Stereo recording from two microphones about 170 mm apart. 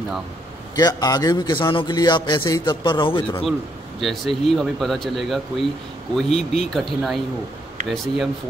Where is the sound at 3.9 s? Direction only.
Centre (ahead or behind).